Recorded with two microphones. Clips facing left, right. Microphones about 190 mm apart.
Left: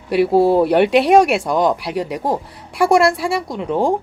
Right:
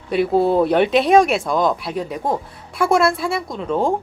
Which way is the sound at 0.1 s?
5° left (ahead or behind).